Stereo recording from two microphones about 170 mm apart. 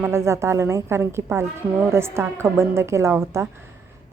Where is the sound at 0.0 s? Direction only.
15° right (ahead or behind).